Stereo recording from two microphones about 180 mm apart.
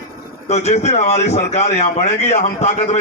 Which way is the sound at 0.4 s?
40° left (ahead or behind).